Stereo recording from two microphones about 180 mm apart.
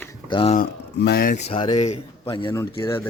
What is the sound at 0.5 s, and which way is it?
Speech, 60° left (ahead or behind).